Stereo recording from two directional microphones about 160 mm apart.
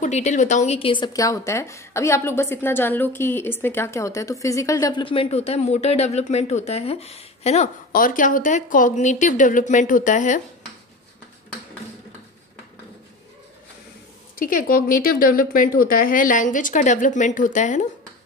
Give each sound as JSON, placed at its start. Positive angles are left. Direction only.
{"t": 0.0, "sound": "a woman's voice", "side_deg": 45}
{"t": 5.0, "sound": "speech", "side_deg": 35}
{"t": 7.9, "sound": "speech", "side_deg": 60}
{"t": 14.3, "sound": "speech", "side_deg": 60}